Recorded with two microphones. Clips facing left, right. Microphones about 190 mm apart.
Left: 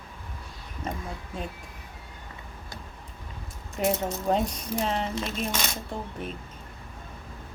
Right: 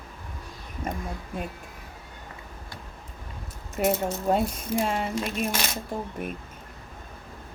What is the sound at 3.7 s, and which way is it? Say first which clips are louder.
A woman's voice: right 2 dB; 5° right (ahead or behind).